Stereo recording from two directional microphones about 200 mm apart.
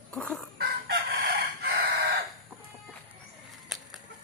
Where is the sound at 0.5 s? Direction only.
50° right (ahead or behind).